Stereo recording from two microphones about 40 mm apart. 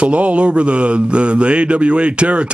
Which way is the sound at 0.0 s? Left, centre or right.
Right.